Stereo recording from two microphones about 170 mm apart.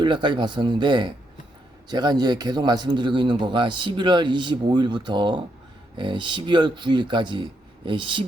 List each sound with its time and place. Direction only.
0.0 s a man's voice: 30° right (ahead or behind)